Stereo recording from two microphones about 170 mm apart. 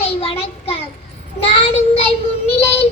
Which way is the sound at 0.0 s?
35° left (ahead or behind).